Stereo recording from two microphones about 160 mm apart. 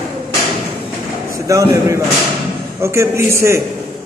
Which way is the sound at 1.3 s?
20° right (ahead or behind).